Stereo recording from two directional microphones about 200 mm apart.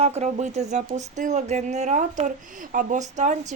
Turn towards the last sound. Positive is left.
turn(degrees=-35)  # may be behind; listen again after turning